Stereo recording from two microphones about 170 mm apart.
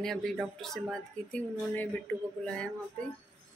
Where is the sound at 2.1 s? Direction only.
10° left (ahead or behind).